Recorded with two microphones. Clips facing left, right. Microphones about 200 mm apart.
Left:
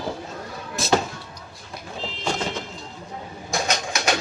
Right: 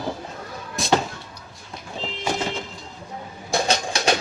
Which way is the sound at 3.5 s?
30° right (ahead or behind).